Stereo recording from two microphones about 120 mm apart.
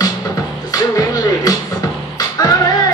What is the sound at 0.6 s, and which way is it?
Music, 30° left (ahead or behind).